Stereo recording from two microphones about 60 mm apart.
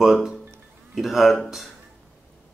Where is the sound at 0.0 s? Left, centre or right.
Centre.